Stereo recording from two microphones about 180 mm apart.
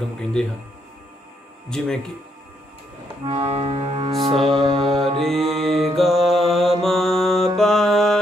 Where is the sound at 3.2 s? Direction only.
30° right (ahead or behind).